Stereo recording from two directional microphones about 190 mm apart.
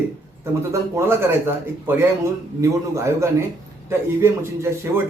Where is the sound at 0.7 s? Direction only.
15° right (ahead or behind).